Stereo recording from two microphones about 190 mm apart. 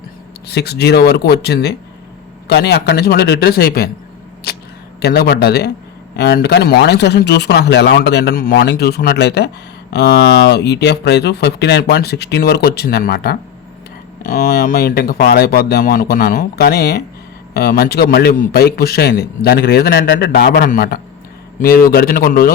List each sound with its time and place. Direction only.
0.4 s a man's voice: 60° left (ahead or behind)
4.5 s camera: 60° left (ahead or behind)
4.9 s a man's voice: 60° left (ahead or behind)